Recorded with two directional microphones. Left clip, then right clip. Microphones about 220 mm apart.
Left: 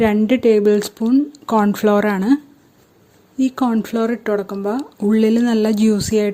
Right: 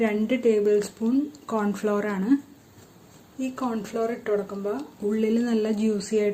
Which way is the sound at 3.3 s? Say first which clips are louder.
Left 11 dB; 40° left (ahead or behind).